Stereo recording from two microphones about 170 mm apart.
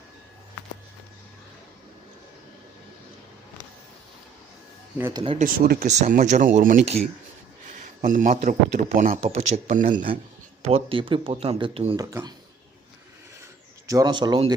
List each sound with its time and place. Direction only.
5.1 s speech: 30° right (ahead or behind)
5.4 s speech: 60° right (ahead or behind)
5.8 s speech: 45° right (ahead or behind)
6.8 s speech: 40° right (ahead or behind)
8.0 s speech: 50° right (ahead or behind)
9.9 s speech: 35° right (ahead or behind)
11.9 s speech: 20° right (ahead or behind)
13.8 s speech: 20° right (ahead or behind)